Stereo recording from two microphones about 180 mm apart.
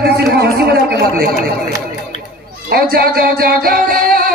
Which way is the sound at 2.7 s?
60° right (ahead or behind).